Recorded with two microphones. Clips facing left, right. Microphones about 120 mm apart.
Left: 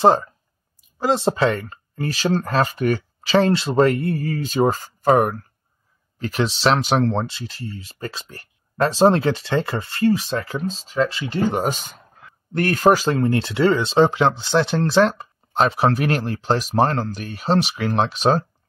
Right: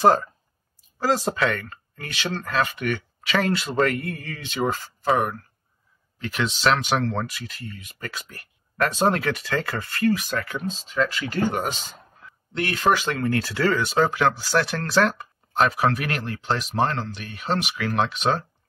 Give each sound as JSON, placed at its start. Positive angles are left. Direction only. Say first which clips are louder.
{"t": 0.0, "sound": "speech", "louder": "left 2 dB", "side_deg": 25}
{"t": 11.5, "sound": "speech", "louder": "left 5 dB", "side_deg": 35}
{"t": 13.3, "sound": "speech", "louder": "left 2 dB", "side_deg": 25}